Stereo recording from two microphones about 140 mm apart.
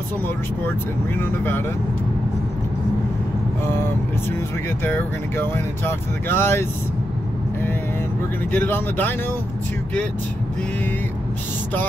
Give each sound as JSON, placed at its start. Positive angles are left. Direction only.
{"t": 0.7, "sound": "speech", "side_deg": 15}
{"t": 4.8, "sound": "speech", "side_deg": 15}
{"t": 8.5, "sound": "speech", "side_deg": 15}